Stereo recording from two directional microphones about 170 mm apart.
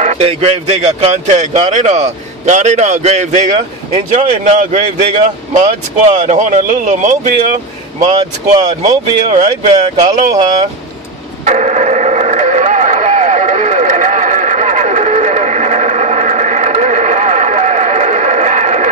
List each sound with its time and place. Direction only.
0.0 s a man's voice: 40° right (ahead or behind)
8.5 s a man's voice: 45° right (ahead or behind)
11.4 s radio: 45° right (ahead or behind)